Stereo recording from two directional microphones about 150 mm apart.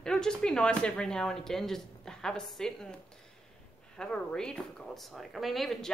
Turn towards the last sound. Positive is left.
turn(degrees=0)  # may be behind; listen again after turning